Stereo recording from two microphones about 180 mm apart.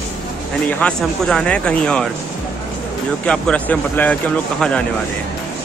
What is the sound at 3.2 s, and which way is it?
Speech, 5° left (ahead or behind).